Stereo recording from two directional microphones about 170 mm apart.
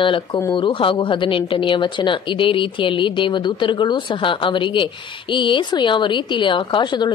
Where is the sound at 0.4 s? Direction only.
25° left (ahead or behind).